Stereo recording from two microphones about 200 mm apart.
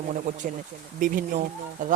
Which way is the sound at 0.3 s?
40° right (ahead or behind).